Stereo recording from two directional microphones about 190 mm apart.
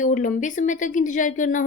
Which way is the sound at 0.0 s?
40° left (ahead or behind).